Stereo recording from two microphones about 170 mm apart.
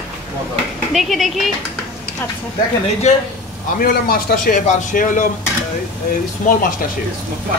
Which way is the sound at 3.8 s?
60° left (ahead or behind).